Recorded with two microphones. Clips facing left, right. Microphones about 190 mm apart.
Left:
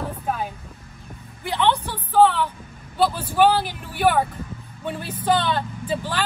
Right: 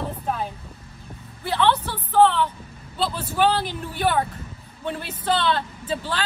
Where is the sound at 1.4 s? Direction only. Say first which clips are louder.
Even; 15° left (ahead or behind).